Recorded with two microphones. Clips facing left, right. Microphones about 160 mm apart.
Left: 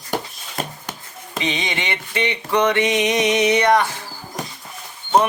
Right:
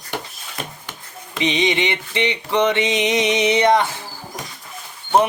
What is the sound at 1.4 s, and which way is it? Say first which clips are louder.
Speech: right 6 dB; 20° right (ahead or behind).